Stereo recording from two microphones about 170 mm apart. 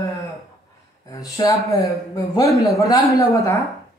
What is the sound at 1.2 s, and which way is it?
A woman's voice, 20° left (ahead or behind).